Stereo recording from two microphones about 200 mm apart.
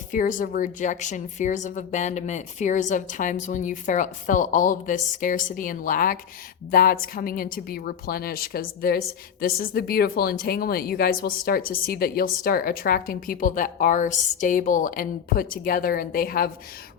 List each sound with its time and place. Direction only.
0.1 s a woman's voice: 40° left (ahead or behind)